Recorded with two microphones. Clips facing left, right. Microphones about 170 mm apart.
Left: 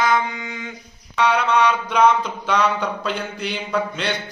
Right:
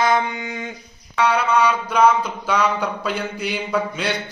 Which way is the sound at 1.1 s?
5° right (ahead or behind).